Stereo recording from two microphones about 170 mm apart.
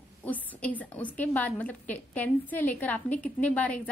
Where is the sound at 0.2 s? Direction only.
10° left (ahead or behind).